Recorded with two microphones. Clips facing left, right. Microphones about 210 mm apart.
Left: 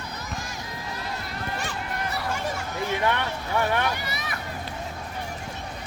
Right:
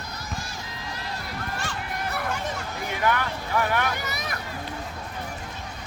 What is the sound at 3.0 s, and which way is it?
Vehicle, 25° left (ahead or behind).